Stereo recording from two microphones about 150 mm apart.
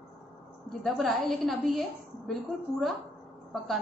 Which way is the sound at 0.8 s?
Centre (ahead or behind).